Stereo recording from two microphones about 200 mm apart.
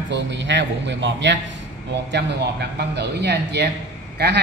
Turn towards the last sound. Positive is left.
turn(degrees=-55)  # may be behind; listen again after turning